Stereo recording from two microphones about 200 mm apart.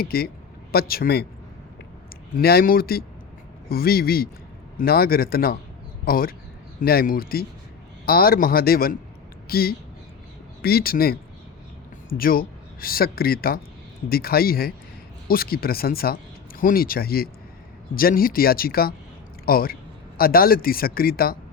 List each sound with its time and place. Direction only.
0.0 s speech: 50° left (ahead or behind)
2.3 s speech: 50° left (ahead or behind)